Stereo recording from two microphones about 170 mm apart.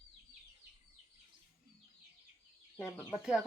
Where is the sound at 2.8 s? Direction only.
15° left (ahead or behind).